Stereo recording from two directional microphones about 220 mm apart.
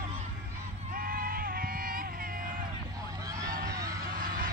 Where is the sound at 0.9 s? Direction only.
40° right (ahead or behind).